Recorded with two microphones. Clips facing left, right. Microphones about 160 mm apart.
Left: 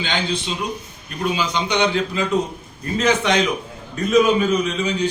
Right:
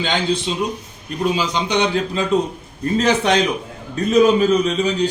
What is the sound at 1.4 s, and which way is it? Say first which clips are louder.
A man's voice: right 1 dB; 35° right (ahead or behind).